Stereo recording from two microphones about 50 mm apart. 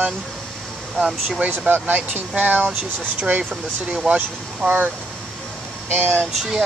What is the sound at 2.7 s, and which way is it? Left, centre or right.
Speech, right.